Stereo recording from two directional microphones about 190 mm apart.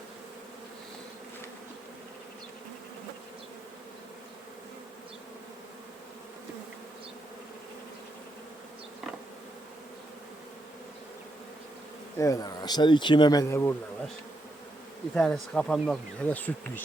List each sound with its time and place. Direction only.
12.1 s speech: 15° left (ahead or behind)
15.1 s speech: 5° left (ahead or behind)